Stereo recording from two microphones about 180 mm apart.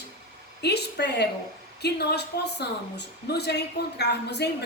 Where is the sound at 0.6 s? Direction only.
65° left (ahead or behind).